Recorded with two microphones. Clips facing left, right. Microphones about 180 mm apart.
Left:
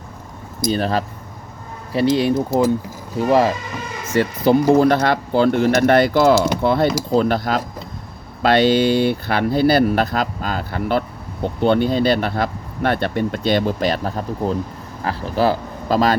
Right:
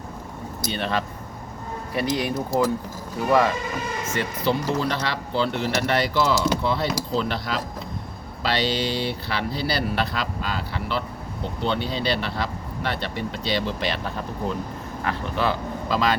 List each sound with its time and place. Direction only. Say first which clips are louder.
0.7 s speech: left 6 dB; 35° left (ahead or behind)
4.1 s speech: left 10 dB; 45° left (ahead or behind)